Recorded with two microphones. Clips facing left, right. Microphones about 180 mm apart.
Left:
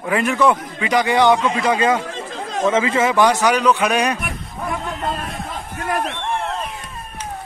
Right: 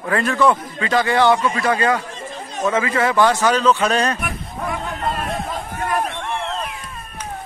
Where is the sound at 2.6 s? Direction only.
20° left (ahead or behind).